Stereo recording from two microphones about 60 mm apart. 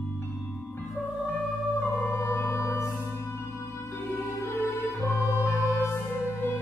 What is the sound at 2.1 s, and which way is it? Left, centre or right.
Music, left.